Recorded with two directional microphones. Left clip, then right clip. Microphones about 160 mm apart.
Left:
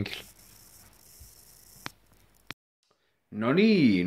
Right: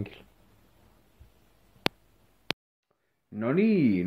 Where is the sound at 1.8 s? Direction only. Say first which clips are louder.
Right 12 dB; 45° right (ahead or behind).